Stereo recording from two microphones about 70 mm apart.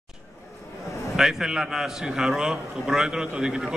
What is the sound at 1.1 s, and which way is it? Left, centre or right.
A man's voice, centre.